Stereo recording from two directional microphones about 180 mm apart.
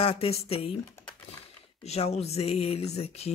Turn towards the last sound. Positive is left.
turn(degrees=35)  # may be behind; listen again after turning